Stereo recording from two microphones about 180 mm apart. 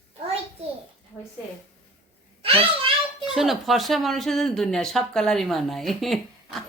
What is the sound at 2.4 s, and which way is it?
Speech, 30° right (ahead or behind).